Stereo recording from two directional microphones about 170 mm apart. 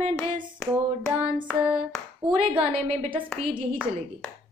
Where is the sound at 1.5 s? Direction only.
5° right (ahead or behind).